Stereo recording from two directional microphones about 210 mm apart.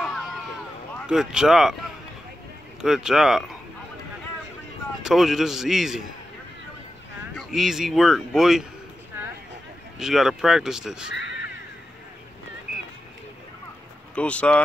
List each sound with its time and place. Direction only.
1.0 s speech: 5° right (ahead or behind)
2.8 s speech: centre (ahead or behind)
5.0 s speech: centre (ahead or behind)
7.3 s speech: centre (ahead or behind)
9.9 s speech: centre (ahead or behind)
11.1 s caw: 60° left (ahead or behind)
14.1 s speech: 5° left (ahead or behind)